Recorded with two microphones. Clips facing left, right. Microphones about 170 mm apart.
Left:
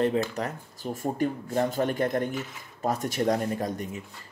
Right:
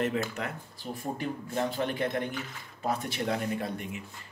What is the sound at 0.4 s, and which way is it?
Speech, 40° left (ahead or behind).